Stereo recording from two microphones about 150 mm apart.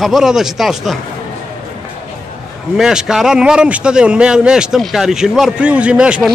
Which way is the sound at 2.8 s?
5° right (ahead or behind).